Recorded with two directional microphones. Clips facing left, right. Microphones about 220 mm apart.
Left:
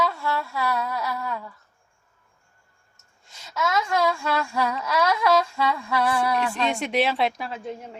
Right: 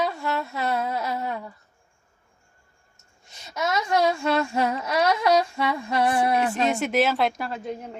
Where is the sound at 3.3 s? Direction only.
20° right (ahead or behind).